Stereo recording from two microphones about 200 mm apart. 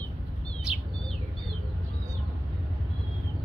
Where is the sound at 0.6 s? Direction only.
5° right (ahead or behind).